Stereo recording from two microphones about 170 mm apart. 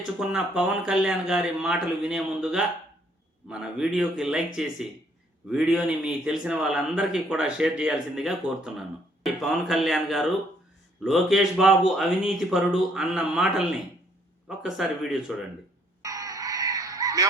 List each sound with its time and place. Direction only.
0.0 s a man's voice: 5° right (ahead or behind)
16.0 s music: 20° right (ahead or behind)